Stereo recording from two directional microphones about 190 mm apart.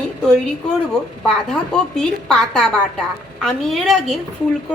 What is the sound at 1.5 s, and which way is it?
A woman's voice, 5° left (ahead or behind).